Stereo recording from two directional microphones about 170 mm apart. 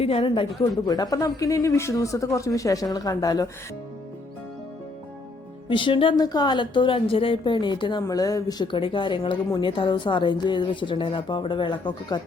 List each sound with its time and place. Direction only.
0.0 s a woman's voice: 35° left (ahead or behind)
5.6 s a woman's voice: 30° left (ahead or behind)